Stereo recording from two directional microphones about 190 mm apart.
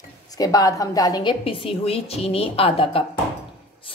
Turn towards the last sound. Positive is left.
turn(degrees=30)  # may be behind; listen again after turning